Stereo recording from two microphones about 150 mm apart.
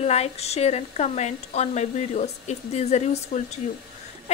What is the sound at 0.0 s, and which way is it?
A woman's voice, 45° left (ahead or behind).